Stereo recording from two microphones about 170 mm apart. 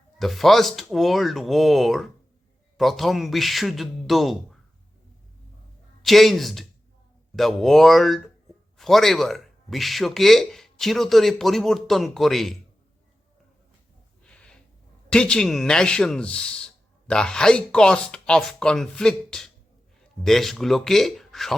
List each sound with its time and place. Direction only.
0.2 s a man's voice: centre (ahead or behind)
6.0 s a man's voice: centre (ahead or behind)
14.3 s a sound: 5° left (ahead or behind)
15.1 s a man's voice: 5° left (ahead or behind)